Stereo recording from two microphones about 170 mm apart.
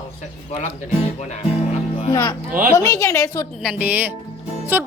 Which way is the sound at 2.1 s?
25° left (ahead or behind).